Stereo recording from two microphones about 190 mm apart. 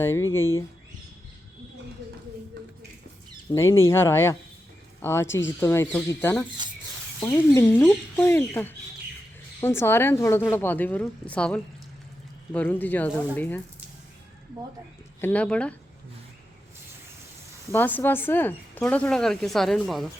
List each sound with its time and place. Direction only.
0.0 s speech: 15° left (ahead or behind)
3.5 s speech: 15° left (ahead or behind)
5.2 s speech: 80° left
5.5 s speech: 15° left (ahead or behind)
15.2 s speech: 5° left (ahead or behind)
17.7 s speech: 10° left (ahead or behind)